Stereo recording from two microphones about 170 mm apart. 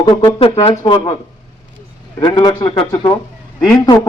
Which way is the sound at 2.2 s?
25° left (ahead or behind).